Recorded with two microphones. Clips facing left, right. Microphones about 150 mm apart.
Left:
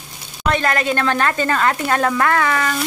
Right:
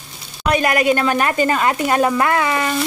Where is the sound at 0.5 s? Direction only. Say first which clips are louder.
Right 4 dB; 15° right (ahead or behind).